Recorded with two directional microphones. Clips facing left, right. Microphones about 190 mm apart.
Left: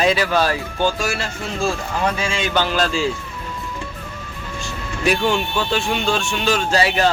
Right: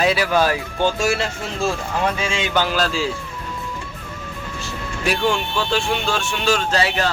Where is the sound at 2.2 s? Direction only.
20° right (ahead or behind).